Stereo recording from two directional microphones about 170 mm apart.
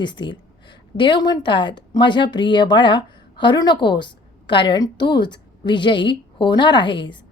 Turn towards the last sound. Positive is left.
turn(degrees=30)  # may be behind; listen again after turning